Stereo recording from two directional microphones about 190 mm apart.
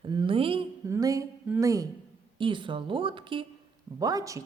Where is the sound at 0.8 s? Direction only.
15° right (ahead or behind).